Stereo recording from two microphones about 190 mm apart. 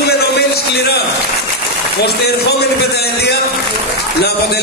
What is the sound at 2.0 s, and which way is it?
A man's voice, 60° left (ahead or behind).